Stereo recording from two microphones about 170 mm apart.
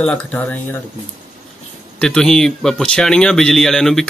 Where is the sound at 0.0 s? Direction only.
10° left (ahead or behind).